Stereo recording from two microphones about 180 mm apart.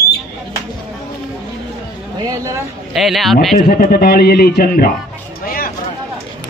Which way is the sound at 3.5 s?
55° left (ahead or behind).